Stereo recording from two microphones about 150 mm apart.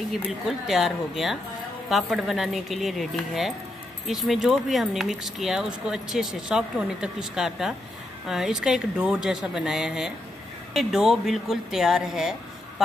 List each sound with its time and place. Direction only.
0.2 s speech: centre (ahead or behind)